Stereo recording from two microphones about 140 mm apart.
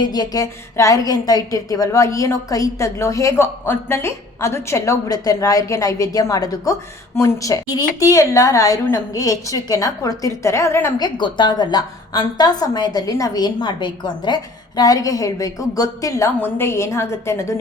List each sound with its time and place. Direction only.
0.0 s a woman's voice: 30° left (ahead or behind)
11.0 s a woman's voice: 35° left (ahead or behind)